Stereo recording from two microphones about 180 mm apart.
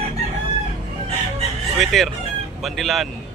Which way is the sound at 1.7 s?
Centre (ahead or behind).